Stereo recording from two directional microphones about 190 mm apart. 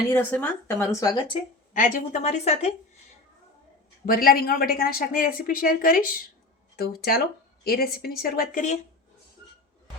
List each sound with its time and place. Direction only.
0.1 s speech: 10° left (ahead or behind)
1.7 s a woman's voice: 45° left (ahead or behind)
4.0 s speech: 50° left (ahead or behind)